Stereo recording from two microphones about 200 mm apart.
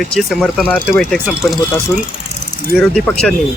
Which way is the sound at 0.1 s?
Centre (ahead or behind).